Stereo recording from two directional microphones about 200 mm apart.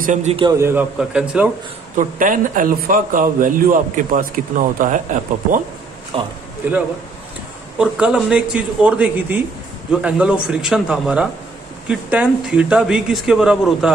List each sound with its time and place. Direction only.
0.0 s a man's voice: 35° right (ahead or behind)
0.4 s a man's voice: 15° right (ahead or behind)
2.0 s a man's voice: 40° right (ahead or behind)
6.1 s speech: 25° right (ahead or behind)
6.6 s a man's voice: 10° right (ahead or behind)
7.8 s a man's voice: 5° right (ahead or behind)